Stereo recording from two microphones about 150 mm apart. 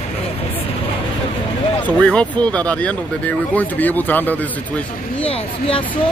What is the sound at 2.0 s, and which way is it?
Speech, 10° left (ahead or behind).